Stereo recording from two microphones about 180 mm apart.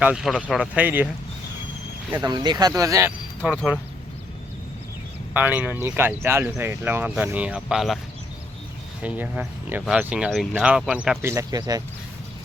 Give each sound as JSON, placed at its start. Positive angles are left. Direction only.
{"t": 0.0, "sound": "speech", "side_deg": -5}
{"t": 2.2, "sound": "speech", "side_deg": -25}
{"t": 3.4, "sound": "speech", "side_deg": -5}
{"t": 5.3, "sound": "speech", "side_deg": -10}
{"t": 9.0, "sound": "speech", "side_deg": -10}